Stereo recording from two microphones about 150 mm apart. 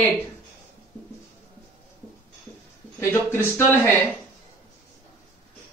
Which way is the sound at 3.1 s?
15° left (ahead or behind).